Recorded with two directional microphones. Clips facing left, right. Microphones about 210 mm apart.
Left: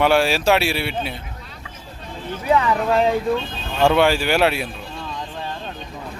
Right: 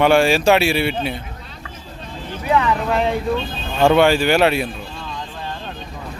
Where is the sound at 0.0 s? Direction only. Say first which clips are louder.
Right 3 dB; 5° left (ahead or behind).